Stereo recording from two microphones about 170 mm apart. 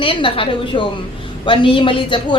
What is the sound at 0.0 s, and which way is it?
A woman's voice, 30° left (ahead or behind).